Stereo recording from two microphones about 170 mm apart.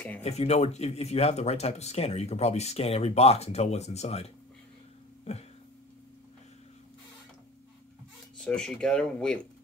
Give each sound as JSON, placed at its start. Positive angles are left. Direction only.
{"t": 0.2, "sound": "speech", "side_deg": 40}
{"t": 8.4, "sound": "speech", "side_deg": 5}